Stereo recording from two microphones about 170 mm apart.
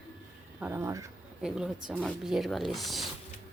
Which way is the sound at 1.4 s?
5° right (ahead or behind).